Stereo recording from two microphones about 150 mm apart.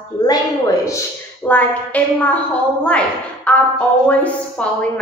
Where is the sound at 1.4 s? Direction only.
10° left (ahead or behind).